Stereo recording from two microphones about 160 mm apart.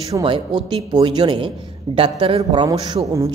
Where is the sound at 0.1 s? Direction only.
30° right (ahead or behind).